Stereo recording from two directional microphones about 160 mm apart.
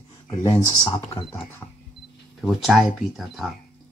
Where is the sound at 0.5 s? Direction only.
25° left (ahead or behind).